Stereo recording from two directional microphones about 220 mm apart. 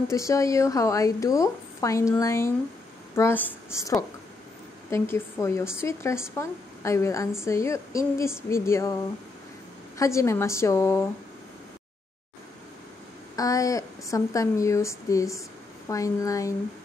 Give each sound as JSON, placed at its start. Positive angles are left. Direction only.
{"t": 0.1, "sound": "a woman's voice", "side_deg": 15}
{"t": 4.9, "sound": "a woman's voice", "side_deg": 10}
{"t": 9.9, "sound": "a woman's voice", "side_deg": 15}
{"t": 13.4, "sound": "a woman's voice", "side_deg": 15}